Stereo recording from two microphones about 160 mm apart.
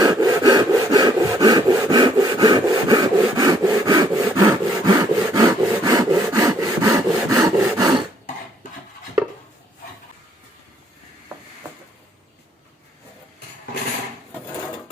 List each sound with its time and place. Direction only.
0.0 s sawing: 25° right (ahead or behind)